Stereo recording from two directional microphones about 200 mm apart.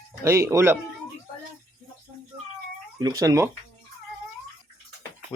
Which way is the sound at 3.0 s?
15° right (ahead or behind).